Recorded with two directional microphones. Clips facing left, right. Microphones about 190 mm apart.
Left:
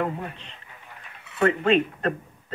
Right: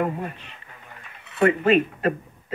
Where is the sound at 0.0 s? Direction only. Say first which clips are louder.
Right 2 dB; 10° right (ahead or behind).